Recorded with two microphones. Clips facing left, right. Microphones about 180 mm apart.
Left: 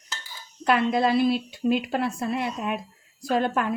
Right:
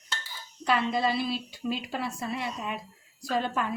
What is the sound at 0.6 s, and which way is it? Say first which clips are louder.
A woman's voice: left 5 dB; 60° left (ahead or behind).